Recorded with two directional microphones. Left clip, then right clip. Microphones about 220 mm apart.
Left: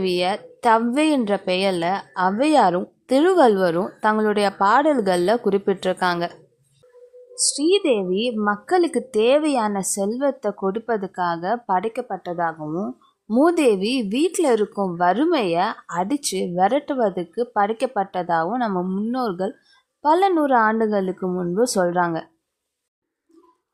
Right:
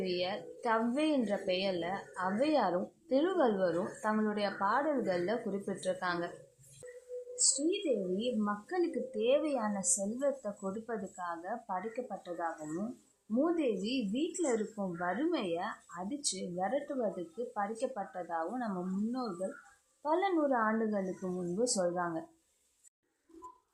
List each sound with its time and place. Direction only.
0.0 s a woman's voice: 45° left (ahead or behind)
7.4 s a woman's voice: 45° left (ahead or behind)